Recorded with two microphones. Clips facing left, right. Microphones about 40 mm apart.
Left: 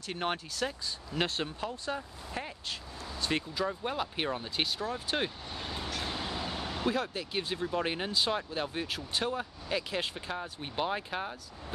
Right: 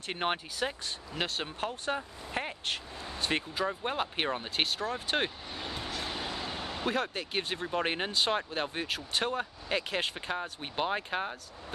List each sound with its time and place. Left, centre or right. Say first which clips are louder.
0.0 s speech: right 2 dB; right
1.1 s speech: left 2 dB; centre
1.6 s speech: right 2 dB; right
2.3 s a sound: right 4 dB; right
3.3 s speech: right 1 dB; right
5.5 s vehicle: even; centre
7.0 s speech: right 1 dB; right